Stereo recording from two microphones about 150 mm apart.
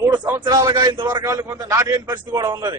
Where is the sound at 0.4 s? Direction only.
25° right (ahead or behind).